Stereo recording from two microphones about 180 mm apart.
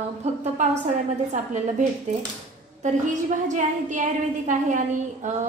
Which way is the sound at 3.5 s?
45° right (ahead or behind).